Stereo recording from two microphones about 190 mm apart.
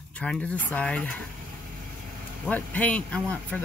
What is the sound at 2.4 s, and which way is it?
A man's voice, 5° left (ahead or behind).